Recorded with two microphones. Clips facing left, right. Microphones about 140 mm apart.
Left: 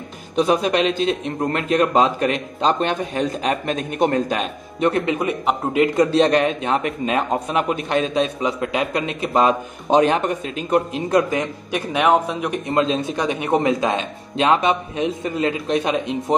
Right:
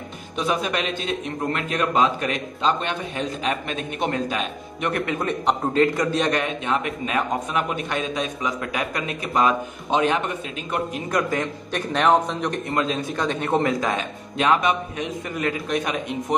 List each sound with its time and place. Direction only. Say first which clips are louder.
0.4 s a man's voice: left 7 dB; 35° left (ahead or behind)
5.1 s a man's voice: left 2 dB; 10° left (ahead or behind)
5.9 s a man's voice: left 7 dB; 30° left (ahead or behind)
11.9 s a man's voice: left 1 dB; 10° left (ahead or behind)
12.6 s speech: left 5 dB; 25° left (ahead or behind)